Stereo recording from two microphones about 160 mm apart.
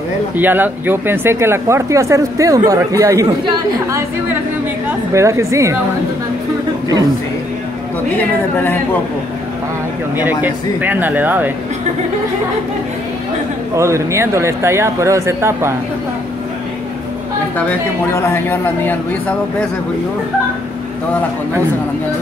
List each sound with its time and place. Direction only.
0.4 s speech: 10° right (ahead or behind)
10.1 s speech: 10° right (ahead or behind)
13.7 s speech: 15° right (ahead or behind)
17.6 s speech: 10° left (ahead or behind)